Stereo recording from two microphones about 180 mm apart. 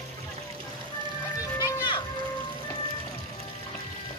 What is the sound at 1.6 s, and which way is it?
Music, 25° left (ahead or behind).